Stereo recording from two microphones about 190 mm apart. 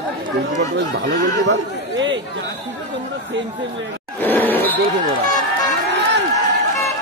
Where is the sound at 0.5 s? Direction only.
70° right (ahead or behind).